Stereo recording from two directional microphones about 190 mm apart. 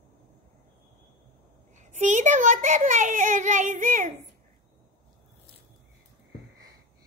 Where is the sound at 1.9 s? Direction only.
40° right (ahead or behind).